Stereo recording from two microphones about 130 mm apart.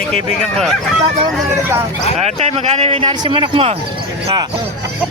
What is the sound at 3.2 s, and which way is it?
Speech, 40° right (ahead or behind).